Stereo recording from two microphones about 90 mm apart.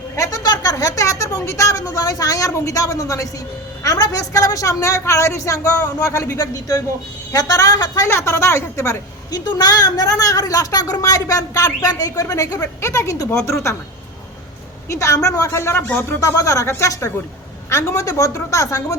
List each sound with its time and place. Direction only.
0.2 s a sound: 45° left (ahead or behind)
3.8 s a woman's voice: 40° left (ahead or behind)
8.0 s speech: 30° left (ahead or behind)
9.3 s a woman's voice: 45° left (ahead or behind)
14.8 s speech: 35° left (ahead or behind)